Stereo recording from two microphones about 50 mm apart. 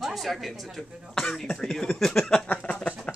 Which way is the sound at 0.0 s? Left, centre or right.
Centre.